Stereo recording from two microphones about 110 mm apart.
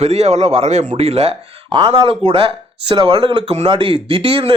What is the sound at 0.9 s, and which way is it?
Speech, 70° right (ahead or behind).